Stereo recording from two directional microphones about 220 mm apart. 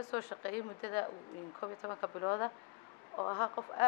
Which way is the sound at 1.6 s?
20° left (ahead or behind).